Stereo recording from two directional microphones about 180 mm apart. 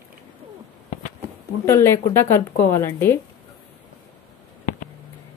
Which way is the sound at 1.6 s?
15° left (ahead or behind).